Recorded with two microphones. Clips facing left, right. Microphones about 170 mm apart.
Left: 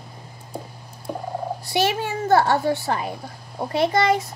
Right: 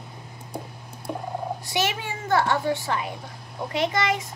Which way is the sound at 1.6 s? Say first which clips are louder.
Left 7 dB; 35° left (ahead or behind).